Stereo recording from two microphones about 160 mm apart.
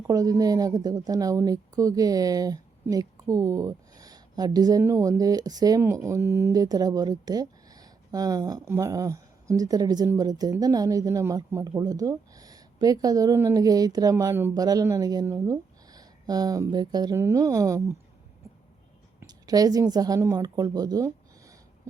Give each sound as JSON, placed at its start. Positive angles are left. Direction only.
{"t": 0.1, "sound": "a woman's voice", "side_deg": -20}
{"t": 19.3, "sound": "a sound", "side_deg": -25}
{"t": 19.9, "sound": "a woman's voice", "side_deg": -25}